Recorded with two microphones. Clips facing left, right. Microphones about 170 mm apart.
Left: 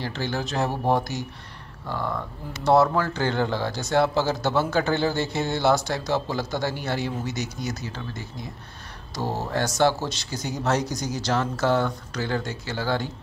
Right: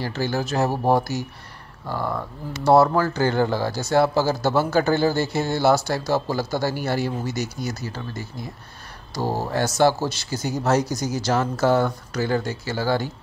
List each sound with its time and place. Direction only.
0.0 s speech: 5° right (ahead or behind)
9.2 s speech: 35° right (ahead or behind)
10.0 s speech: 5° right (ahead or behind)